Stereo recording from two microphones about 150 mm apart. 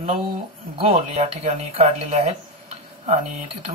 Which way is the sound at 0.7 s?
40° right (ahead or behind).